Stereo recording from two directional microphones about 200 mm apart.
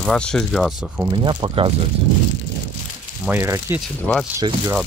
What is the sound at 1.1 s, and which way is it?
Speech, 25° right (ahead or behind).